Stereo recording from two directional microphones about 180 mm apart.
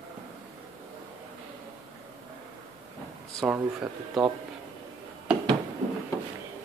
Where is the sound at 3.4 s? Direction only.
10° right (ahead or behind).